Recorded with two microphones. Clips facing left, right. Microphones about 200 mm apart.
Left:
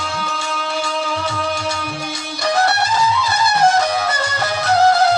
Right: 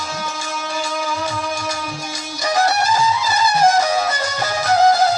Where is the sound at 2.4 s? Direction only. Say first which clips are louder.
Even; 65° left (ahead or behind).